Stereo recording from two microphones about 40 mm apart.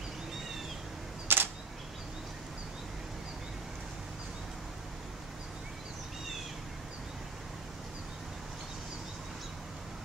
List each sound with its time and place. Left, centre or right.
1.2 s camera: right